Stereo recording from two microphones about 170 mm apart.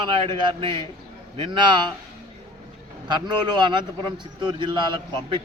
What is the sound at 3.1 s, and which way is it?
Speech, 25° right (ahead or behind).